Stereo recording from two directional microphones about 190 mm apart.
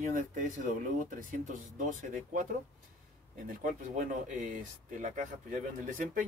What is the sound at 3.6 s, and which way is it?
Speech, 40° right (ahead or behind).